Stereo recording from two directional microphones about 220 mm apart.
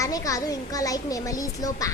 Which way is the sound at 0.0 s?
15° left (ahead or behind).